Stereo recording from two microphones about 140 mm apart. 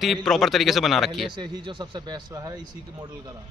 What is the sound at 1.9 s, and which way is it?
Speech, 30° right (ahead or behind).